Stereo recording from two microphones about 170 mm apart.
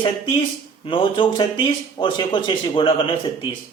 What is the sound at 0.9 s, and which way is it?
Speech, 30° left (ahead or behind).